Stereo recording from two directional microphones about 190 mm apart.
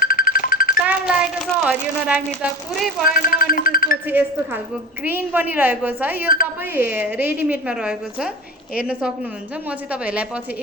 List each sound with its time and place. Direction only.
0.0 s music: 50° left (ahead or behind)
0.9 s a woman's voice: 5° right (ahead or behind)
3.1 s speech: 50° left (ahead or behind)
4.0 s a woman's voice: 10° right (ahead or behind)
6.2 s speech: 50° left (ahead or behind)
6.7 s a woman's voice: 10° right (ahead or behind)